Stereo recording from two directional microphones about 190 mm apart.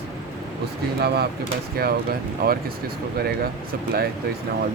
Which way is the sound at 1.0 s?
55° right (ahead or behind).